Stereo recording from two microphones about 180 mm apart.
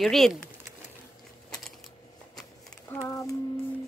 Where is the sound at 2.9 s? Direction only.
20° left (ahead or behind).